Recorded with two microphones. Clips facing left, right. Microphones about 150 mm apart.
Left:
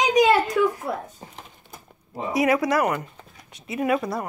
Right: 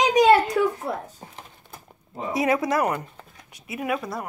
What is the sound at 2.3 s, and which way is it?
Speech, 25° right (ahead or behind).